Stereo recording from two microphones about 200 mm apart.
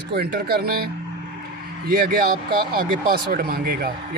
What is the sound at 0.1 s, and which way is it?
Speech, 50° right (ahead or behind).